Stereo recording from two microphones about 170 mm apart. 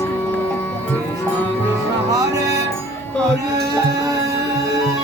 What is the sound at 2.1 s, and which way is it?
Music, 20° right (ahead or behind).